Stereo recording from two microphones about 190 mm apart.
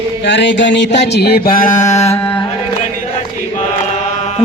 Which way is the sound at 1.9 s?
35° left (ahead or behind).